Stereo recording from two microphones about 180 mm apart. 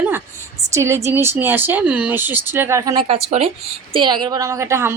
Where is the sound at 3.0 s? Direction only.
35° right (ahead or behind); by 4.9 s 15° right (ahead or behind).